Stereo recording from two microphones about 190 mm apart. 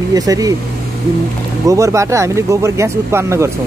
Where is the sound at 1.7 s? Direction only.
15° right (ahead or behind).